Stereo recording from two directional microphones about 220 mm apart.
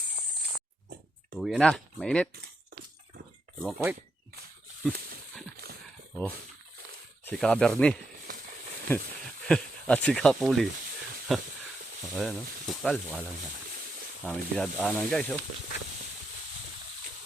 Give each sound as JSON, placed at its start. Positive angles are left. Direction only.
{"t": 1.4, "sound": "speech", "side_deg": 0}
{"t": 3.6, "sound": "speech", "side_deg": 0}
{"t": 4.9, "sound": "horse", "side_deg": -40}
{"t": 7.3, "sound": "speech", "side_deg": 5}
{"t": 14.3, "sound": "speech", "side_deg": 5}